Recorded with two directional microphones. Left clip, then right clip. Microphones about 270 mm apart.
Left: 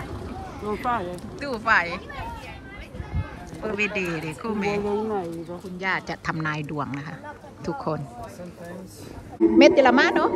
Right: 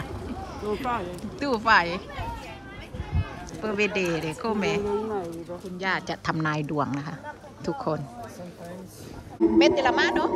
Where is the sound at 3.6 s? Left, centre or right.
Centre.